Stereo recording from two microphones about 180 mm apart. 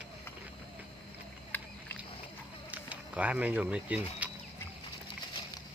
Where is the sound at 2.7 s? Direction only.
10° right (ahead or behind).